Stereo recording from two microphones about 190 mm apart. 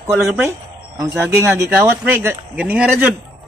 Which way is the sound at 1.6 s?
15° right (ahead or behind).